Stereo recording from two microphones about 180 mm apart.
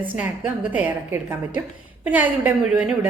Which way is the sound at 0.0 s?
10° right (ahead or behind).